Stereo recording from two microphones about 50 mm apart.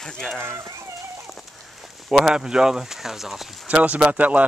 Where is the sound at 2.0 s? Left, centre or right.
Centre.